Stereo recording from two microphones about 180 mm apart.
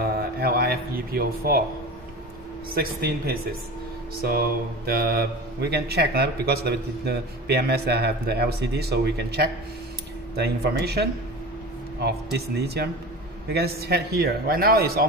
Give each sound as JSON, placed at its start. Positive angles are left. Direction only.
{"t": 0.0, "sound": "a sound", "side_deg": -60}
{"t": 2.7, "sound": "speech", "side_deg": -60}
{"t": 4.8, "sound": "speech", "side_deg": -60}